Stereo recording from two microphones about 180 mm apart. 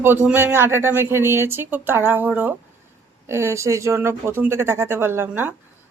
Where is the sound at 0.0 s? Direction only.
10° right (ahead or behind).